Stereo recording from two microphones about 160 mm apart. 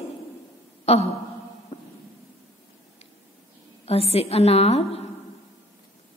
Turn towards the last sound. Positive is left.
turn(degrees=40)  # may be behind; listen again after turning